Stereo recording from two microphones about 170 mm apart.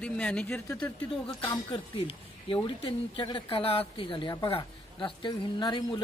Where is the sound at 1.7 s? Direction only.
30° left (ahead or behind).